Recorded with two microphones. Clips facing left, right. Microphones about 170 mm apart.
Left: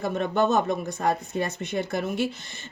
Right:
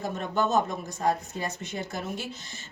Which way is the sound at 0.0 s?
65° left (ahead or behind).